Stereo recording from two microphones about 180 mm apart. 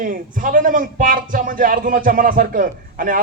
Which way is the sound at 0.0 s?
50° right (ahead or behind).